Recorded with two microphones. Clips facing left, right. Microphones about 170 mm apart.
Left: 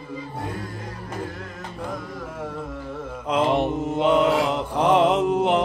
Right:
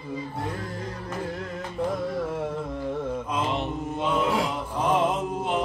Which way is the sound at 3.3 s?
55° left (ahead or behind).